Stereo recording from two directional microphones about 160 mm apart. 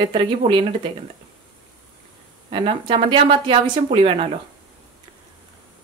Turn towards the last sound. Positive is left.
turn(degrees=-35)  # may be behind; listen again after turning